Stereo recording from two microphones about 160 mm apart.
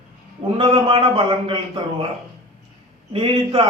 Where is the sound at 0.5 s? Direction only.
35° right (ahead or behind).